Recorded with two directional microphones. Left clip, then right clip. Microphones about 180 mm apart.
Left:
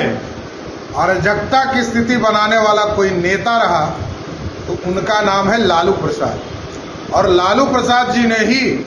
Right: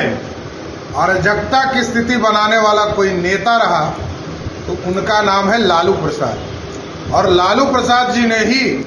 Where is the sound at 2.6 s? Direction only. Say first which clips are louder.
Even; 10° left (ahead or behind).